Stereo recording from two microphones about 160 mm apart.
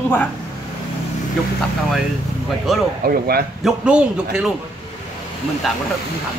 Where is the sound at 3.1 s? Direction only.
75° right (ahead or behind).